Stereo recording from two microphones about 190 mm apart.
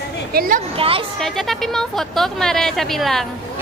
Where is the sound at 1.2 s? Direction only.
Centre (ahead or behind).